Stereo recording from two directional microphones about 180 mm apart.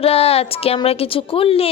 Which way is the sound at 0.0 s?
35° left (ahead or behind).